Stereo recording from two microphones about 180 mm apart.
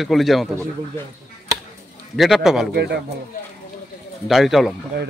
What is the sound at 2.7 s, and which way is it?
Speech, 65° right (ahead or behind).